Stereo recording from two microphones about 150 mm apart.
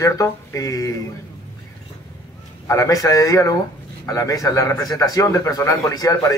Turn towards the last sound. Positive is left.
turn(degrees=25)  # may be behind; listen again after turning